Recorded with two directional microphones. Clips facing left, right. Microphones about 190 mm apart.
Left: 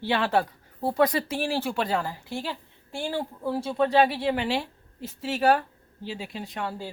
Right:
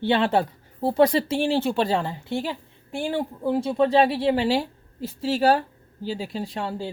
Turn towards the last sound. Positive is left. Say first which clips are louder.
# right 4 dB
turn(degrees=-25)  # may be behind; listen again after turning